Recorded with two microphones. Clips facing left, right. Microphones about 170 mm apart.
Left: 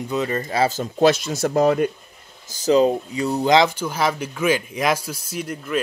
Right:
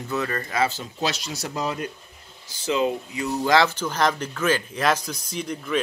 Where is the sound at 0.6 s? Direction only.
45° left (ahead or behind).